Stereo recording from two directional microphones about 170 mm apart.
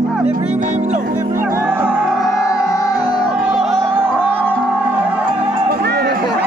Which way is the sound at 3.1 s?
5° right (ahead or behind).